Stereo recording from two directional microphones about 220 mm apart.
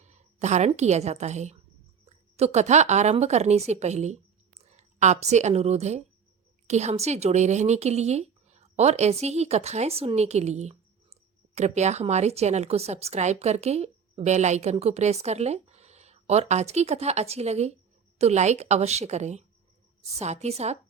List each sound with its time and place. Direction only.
0.0 s a woman's voice: 30° right (ahead or behind)